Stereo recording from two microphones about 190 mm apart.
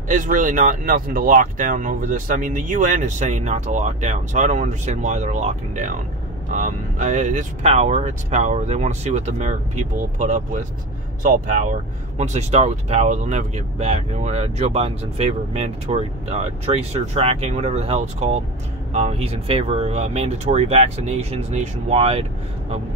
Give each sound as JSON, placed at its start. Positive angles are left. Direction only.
{"t": 0.1, "sound": "speech", "side_deg": -45}